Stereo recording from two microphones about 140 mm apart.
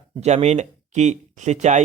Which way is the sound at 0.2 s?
50° right (ahead or behind).